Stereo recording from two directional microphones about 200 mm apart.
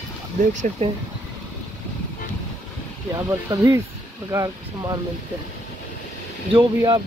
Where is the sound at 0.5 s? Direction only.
40° right (ahead or behind).